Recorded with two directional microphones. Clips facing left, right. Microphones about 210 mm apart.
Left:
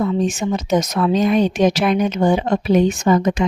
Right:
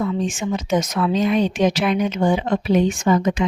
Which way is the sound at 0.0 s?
40° left (ahead or behind).